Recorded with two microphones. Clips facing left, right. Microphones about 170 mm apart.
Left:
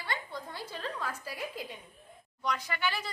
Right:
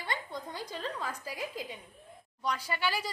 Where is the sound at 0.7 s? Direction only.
10° left (ahead or behind).